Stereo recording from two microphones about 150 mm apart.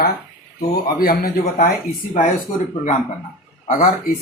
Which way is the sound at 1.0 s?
75° left (ahead or behind).